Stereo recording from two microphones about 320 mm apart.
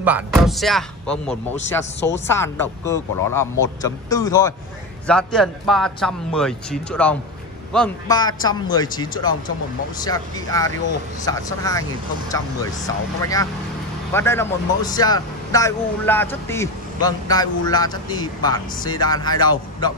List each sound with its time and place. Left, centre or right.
0.0 s a man's voice: centre
12.8 s a man's voice: centre